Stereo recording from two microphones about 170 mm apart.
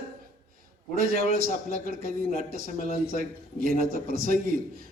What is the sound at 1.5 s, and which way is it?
A man's voice, 50° left (ahead or behind).